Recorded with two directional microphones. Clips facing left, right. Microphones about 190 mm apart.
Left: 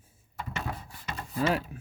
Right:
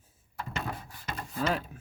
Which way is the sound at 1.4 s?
5° left (ahead or behind).